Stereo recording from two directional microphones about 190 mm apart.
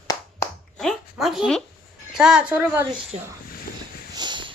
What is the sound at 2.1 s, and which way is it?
Speech, 5° right (ahead or behind).